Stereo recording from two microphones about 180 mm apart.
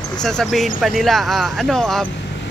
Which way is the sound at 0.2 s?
5° left (ahead or behind).